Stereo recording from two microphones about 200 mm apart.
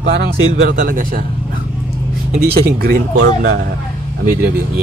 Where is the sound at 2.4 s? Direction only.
50° right (ahead or behind).